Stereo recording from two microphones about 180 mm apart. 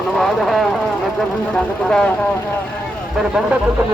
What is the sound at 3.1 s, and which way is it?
Speech, 5° right (ahead or behind).